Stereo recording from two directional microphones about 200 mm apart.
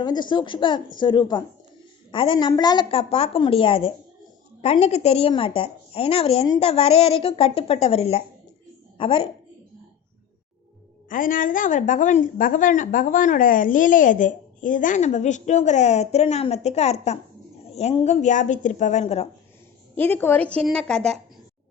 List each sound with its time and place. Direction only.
0.0 s a woman's voice: 20° left (ahead or behind)
11.1 s a woman's voice: 40° left (ahead or behind)
20.0 s a woman's voice: 10° left (ahead or behind)